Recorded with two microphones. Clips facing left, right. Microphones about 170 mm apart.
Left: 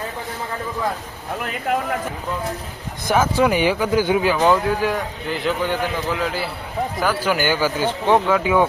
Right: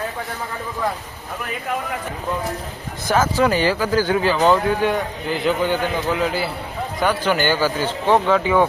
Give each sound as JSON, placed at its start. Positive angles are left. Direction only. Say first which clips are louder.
{"t": 3.1, "sound": "a man's voice", "louder": "even", "side_deg": 15}